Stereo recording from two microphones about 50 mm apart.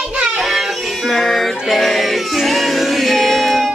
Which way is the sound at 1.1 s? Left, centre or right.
Centre.